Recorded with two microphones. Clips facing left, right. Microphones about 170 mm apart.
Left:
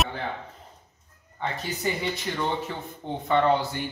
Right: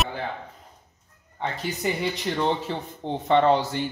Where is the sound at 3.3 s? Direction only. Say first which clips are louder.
Right 3 dB; 25° right (ahead or behind).